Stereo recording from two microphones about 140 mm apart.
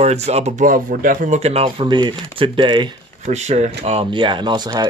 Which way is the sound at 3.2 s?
55° right (ahead or behind).